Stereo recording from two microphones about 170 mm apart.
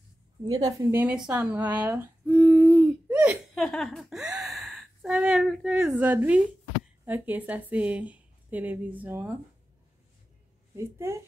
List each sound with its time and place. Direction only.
0.4 s a woman's voice: 20° right (ahead or behind)
1.0 s a woman's voice: 5° right (ahead or behind)
2.2 s a sound: 5° right (ahead or behind)
3.5 s a woman's voice: 5° left (ahead or behind)
10.8 s a woman's voice: 15° right (ahead or behind)